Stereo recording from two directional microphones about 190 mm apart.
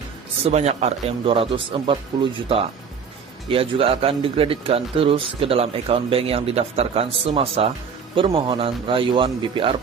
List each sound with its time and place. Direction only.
0.5 s speech: 35° right (ahead or behind)